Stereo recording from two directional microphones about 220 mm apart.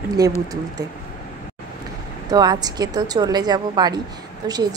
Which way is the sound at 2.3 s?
15° right (ahead or behind).